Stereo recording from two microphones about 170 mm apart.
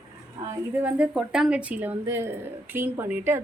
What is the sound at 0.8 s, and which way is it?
A woman's voice, 5° right (ahead or behind).